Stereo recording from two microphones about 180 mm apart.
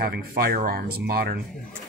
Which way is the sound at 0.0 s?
60° right (ahead or behind).